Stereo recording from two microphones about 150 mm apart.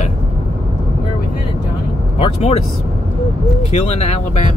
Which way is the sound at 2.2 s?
45° left (ahead or behind).